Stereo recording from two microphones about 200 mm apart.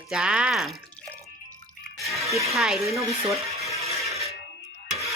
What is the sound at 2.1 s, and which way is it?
Music, centre (ahead or behind).